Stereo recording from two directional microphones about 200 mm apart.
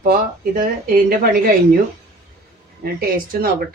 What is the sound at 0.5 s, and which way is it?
Speech, 45° right (ahead or behind).